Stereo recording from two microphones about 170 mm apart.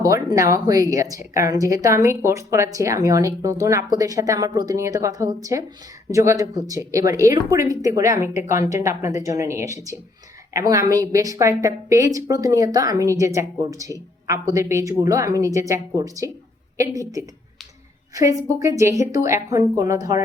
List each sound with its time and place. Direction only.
0.0 s a woman's voice: 20° right (ahead or behind)